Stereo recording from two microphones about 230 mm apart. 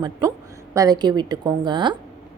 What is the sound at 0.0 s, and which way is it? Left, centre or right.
A woman's voice, centre.